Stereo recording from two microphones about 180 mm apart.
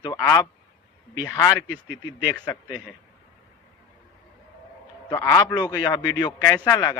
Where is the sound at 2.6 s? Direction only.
10° right (ahead or behind).